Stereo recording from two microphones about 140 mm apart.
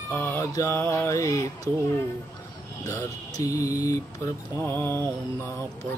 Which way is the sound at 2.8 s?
20° left (ahead or behind).